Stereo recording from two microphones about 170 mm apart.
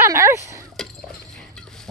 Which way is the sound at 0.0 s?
15° right (ahead or behind).